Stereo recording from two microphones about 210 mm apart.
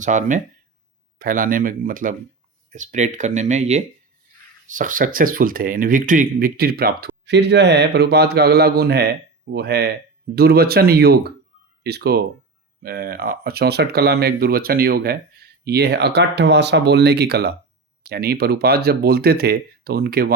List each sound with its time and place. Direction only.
0.0 s speech: 35° right (ahead or behind)